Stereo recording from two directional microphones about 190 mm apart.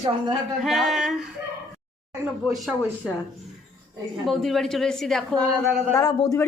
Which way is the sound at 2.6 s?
Centre (ahead or behind).